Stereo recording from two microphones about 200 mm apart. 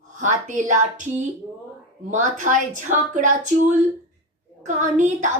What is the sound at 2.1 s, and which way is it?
A woman's voice, 40° right (ahead or behind).